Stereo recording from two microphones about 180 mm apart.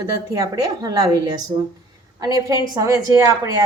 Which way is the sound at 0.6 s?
20° right (ahead or behind).